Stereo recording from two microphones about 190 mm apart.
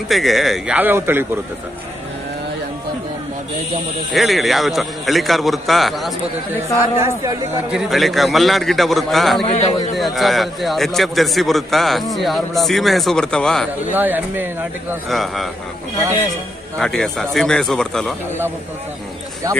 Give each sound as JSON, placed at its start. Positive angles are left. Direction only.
{"t": 0.1, "sound": "a man's voice", "side_deg": 0}
{"t": 4.1, "sound": "a man's voice", "side_deg": 0}
{"t": 7.7, "sound": "a man's voice", "side_deg": 0}
{"t": 9.4, "sound": "a man's voice", "side_deg": 35}
{"t": 9.9, "sound": "a man's voice", "side_deg": 0}
{"t": 13.9, "sound": "speech", "side_deg": -10}
{"t": 15.0, "sound": "a man's voice", "side_deg": 0}
{"t": 16.7, "sound": "a man's voice", "side_deg": 5}
{"t": 19.4, "sound": "speech", "side_deg": -20}